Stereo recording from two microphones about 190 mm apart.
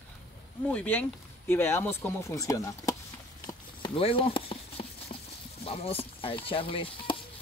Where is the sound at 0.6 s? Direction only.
10° left (ahead or behind).